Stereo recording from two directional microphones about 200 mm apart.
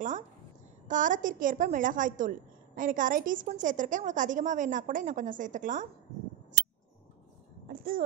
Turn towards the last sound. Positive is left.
turn(degrees=-45)  # may be behind; listen again after turning